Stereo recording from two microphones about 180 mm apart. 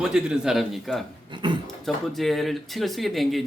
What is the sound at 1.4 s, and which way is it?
Speech, 25° right (ahead or behind).